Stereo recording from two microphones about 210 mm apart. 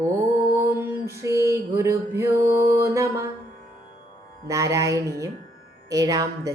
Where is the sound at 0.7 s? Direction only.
10° right (ahead or behind).